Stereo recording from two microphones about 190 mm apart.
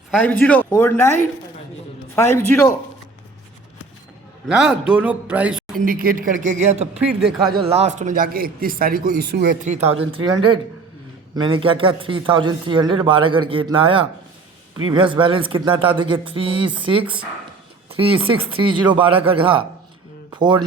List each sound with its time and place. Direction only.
0.1 s speech: 5° left (ahead or behind)
2.1 s speech: 15° left (ahead or behind)
4.4 s a man's voice: 5° right (ahead or behind)
5.8 s speech: 50° right (ahead or behind)
9.6 s speech: 35° right (ahead or behind)
11.3 s a man's voice: 25° right (ahead or behind)